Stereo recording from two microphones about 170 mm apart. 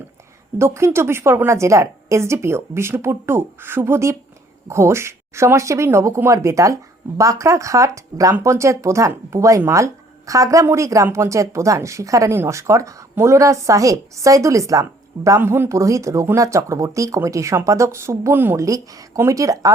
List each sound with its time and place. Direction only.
0.6 s speech: 15° right (ahead or behind)